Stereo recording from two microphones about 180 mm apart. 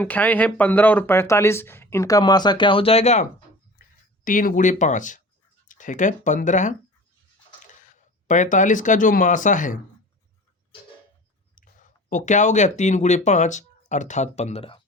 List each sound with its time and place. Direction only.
0.0 s speech: 10° left (ahead or behind); by 3.2 s 40° left (ahead or behind)
3.8 s speech: 50° left (ahead or behind)
7.8 s speech: 45° left (ahead or behind)
11.5 s speech: 45° left (ahead or behind)